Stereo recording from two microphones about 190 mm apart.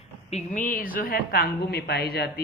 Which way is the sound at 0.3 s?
40° left (ahead or behind).